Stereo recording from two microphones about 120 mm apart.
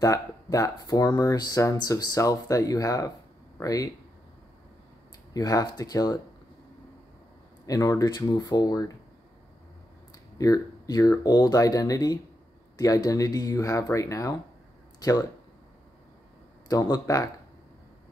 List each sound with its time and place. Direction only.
0.0 s speech: 30° left (ahead or behind)
5.3 s speech: 30° left (ahead or behind)
7.6 s speech: 30° left (ahead or behind)
10.3 s speech: 30° left (ahead or behind)
16.6 s speech: 30° left (ahead or behind)